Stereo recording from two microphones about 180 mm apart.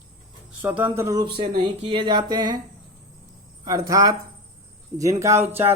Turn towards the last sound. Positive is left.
turn(degrees=-15)  # may be behind; listen again after turning